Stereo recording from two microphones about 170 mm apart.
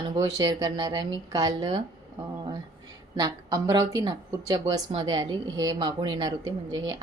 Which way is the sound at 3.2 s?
20° right (ahead or behind).